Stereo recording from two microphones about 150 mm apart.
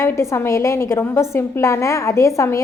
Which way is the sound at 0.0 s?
20° left (ahead or behind).